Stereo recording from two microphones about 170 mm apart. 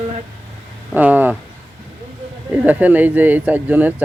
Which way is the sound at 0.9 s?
10° right (ahead or behind).